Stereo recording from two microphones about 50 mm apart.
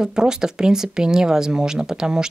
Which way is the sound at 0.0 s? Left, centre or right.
Centre.